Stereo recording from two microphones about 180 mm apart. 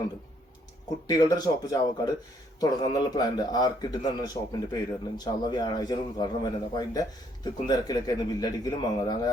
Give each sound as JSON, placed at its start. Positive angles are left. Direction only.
{"t": 1.0, "sound": "a man's voice", "side_deg": 20}